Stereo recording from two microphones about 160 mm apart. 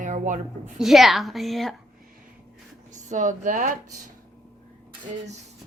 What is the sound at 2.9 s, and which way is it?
A woman's voice, 50° right (ahead or behind).